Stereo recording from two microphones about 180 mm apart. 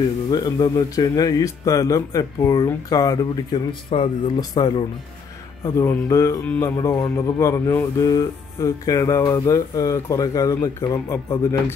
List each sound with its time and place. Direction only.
0.3 s speech: 20° left (ahead or behind)